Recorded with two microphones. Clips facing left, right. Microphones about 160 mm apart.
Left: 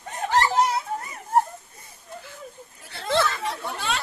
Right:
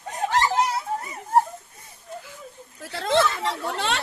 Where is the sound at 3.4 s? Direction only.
75° right (ahead or behind).